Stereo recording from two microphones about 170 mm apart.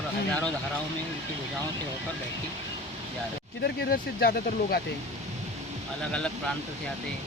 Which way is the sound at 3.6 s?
65° left (ahead or behind).